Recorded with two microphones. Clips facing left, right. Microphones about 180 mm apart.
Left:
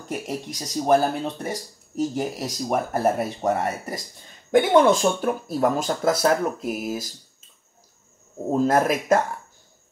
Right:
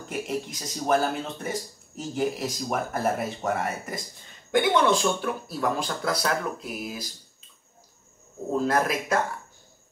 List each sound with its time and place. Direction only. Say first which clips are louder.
0.1 s speech: left 1 dB; 40° left (ahead or behind)
8.5 s speech: left 5 dB; 45° left (ahead or behind)